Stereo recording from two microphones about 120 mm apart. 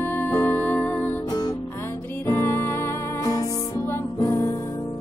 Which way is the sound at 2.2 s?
20° left (ahead or behind).